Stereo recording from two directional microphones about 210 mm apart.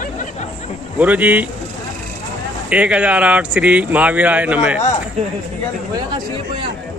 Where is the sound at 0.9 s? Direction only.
5° right (ahead or behind).